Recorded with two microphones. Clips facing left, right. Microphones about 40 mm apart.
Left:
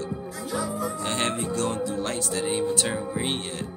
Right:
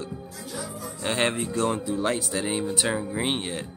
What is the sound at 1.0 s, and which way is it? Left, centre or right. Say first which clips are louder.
Speech: right 5 dB; centre.